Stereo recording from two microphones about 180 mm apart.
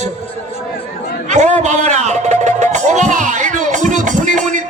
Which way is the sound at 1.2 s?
40° right (ahead or behind).